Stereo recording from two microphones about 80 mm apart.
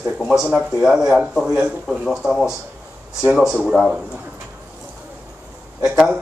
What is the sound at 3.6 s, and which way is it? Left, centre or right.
Speech, centre.